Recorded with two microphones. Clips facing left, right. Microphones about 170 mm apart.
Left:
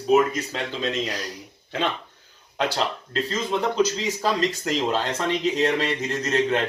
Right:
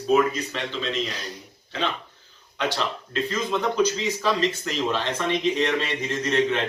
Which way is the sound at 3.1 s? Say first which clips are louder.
Right 1 dB; 30° left (ahead or behind).